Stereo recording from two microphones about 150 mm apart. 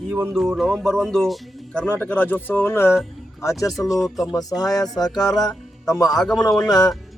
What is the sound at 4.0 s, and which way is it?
Speech, centre (ahead or behind).